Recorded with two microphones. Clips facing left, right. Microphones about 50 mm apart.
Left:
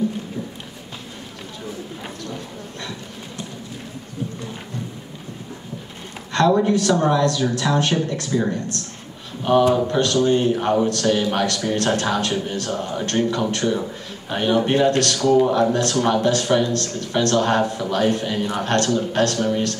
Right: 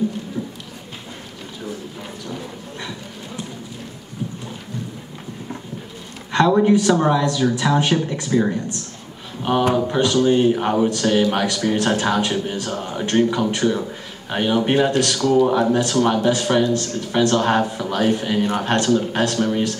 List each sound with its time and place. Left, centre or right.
6.3 s speech: centre